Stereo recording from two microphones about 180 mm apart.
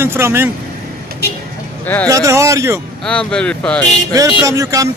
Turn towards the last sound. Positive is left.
turn(degrees=-20)  # may be behind; listen again after turning